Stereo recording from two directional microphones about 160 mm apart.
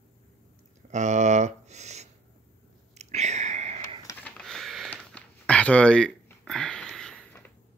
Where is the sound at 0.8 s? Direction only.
50° right (ahead or behind).